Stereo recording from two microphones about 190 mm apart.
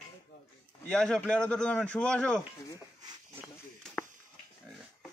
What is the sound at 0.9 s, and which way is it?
A man's voice, 5° left (ahead or behind).